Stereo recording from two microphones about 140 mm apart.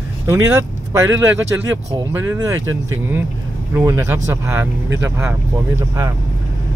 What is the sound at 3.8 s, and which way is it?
Speech, 20° right (ahead or behind).